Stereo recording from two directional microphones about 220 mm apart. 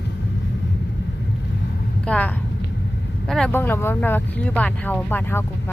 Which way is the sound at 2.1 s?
5° left (ahead or behind).